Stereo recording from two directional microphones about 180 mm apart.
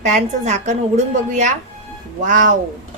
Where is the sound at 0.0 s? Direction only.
40° right (ahead or behind).